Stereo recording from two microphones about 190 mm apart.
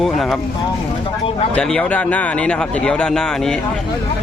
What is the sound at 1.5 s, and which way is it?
Speech, 5° left (ahead or behind).